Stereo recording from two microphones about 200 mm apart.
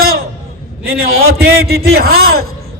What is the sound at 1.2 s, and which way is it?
Speech, 85° right.